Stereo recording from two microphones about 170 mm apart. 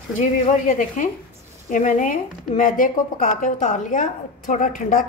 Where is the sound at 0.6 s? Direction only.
50° left (ahead or behind).